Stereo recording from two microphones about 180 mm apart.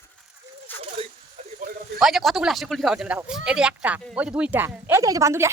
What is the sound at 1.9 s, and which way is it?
Speech, centre (ahead or behind).